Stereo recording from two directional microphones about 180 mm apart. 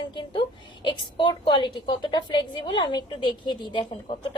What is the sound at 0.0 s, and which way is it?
A woman's voice, 25° left (ahead or behind).